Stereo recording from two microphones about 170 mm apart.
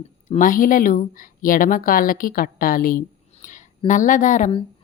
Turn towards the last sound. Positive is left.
turn(degrees=50)  # may be behind; listen again after turning